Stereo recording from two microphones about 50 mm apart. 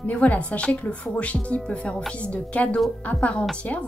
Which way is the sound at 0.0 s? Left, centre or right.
Left.